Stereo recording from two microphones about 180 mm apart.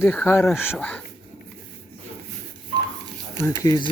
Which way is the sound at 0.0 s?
10° left (ahead or behind).